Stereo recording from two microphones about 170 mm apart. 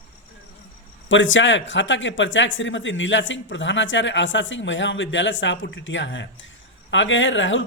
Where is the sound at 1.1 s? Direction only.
90° left.